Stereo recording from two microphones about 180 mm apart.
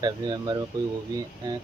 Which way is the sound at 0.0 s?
20° right (ahead or behind).